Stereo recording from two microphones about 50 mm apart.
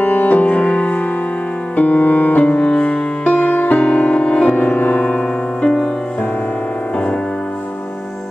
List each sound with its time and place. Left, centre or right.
0.0 s music: left
2.4 s music: left
3.3 s music: left
4.6 s music: left
5.0 s piano: left